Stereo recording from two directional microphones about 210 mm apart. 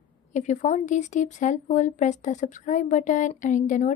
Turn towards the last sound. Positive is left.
turn(degrees=35)  # may be behind; listen again after turning